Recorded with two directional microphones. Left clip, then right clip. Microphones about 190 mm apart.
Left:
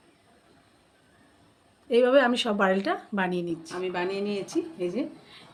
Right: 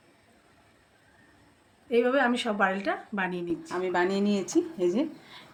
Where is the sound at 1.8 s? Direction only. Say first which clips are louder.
Left 4 dB; 85° left.